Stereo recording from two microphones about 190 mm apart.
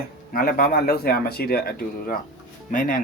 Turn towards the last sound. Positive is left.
turn(degrees=45)  # may be behind; listen again after turning